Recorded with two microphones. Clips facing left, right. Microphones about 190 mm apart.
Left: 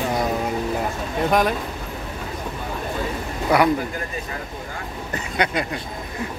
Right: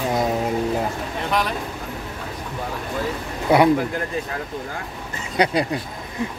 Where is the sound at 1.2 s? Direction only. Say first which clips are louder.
Left 5 dB; 45° left (ahead or behind).